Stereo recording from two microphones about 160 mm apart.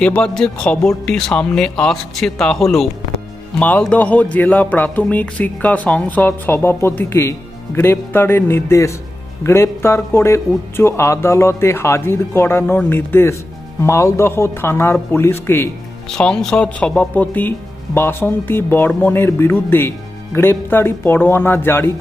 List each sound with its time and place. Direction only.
0.0 s a man's voice: 5° left (ahead or behind)